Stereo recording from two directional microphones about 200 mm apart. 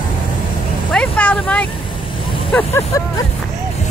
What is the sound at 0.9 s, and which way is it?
Vehicle, 5° left (ahead or behind).